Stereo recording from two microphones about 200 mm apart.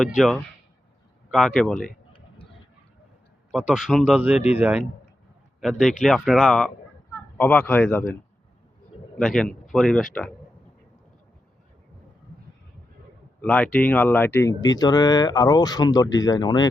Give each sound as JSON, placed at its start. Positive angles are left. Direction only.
{"t": 0.0, "sound": "speech", "side_deg": 0}
{"t": 3.5, "sound": "a man's voice", "side_deg": -5}
{"t": 9.1, "sound": "speech", "side_deg": 0}
{"t": 13.4, "sound": "speech", "side_deg": 5}